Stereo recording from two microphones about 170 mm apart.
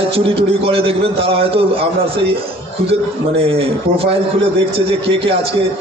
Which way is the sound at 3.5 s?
35° right (ahead or behind).